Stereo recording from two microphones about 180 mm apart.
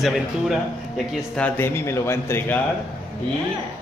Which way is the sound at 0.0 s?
Centre (ahead or behind).